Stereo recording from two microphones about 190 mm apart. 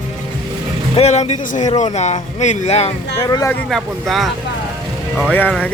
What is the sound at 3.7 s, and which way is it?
Speech, centre (ahead or behind).